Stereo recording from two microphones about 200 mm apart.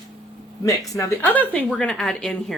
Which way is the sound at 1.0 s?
10° left (ahead or behind).